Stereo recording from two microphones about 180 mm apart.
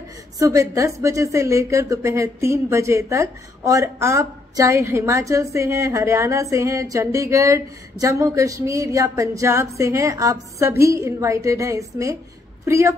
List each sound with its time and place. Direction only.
0.4 s a woman's voice: 15° right (ahead or behind)